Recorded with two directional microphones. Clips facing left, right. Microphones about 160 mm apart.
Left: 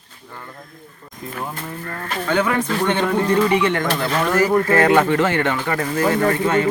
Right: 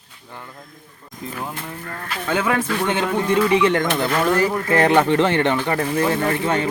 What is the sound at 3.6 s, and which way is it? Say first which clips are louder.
Speech: right 2 dB; 20° right (ahead or behind).